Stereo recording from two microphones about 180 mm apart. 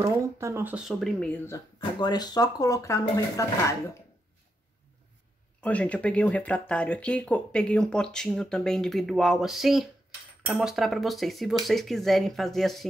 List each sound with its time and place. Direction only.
0.0 s speech: 15° right (ahead or behind); by 1.6 s 10° left (ahead or behind)
2.0 s speech: 20° left (ahead or behind)
5.6 s speech: 5° left (ahead or behind)